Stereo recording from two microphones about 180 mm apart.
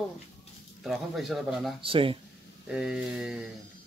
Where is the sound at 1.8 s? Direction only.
30° right (ahead or behind).